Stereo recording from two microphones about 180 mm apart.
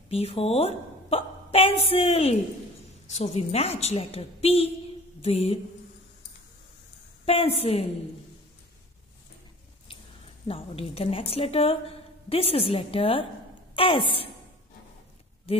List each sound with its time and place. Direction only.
0.1 s a woman's voice: 35° left (ahead or behind)
7.2 s a woman's voice: 30° left (ahead or behind)
10.5 s a woman's voice: 30° left (ahead or behind)